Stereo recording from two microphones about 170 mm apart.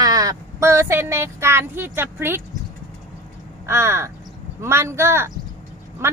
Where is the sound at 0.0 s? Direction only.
20° right (ahead or behind).